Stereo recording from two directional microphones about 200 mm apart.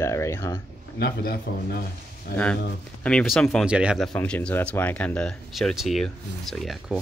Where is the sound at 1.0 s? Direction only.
55° left (ahead or behind).